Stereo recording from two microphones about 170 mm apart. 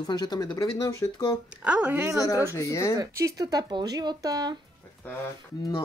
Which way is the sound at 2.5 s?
15° left (ahead or behind).